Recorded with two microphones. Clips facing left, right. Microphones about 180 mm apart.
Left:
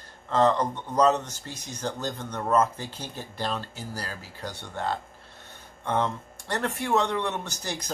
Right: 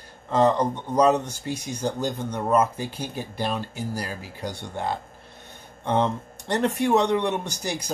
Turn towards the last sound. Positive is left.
turn(degrees=-10)  # may be behind; listen again after turning